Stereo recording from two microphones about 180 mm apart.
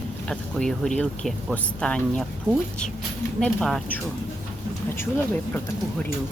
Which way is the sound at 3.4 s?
5° left (ahead or behind).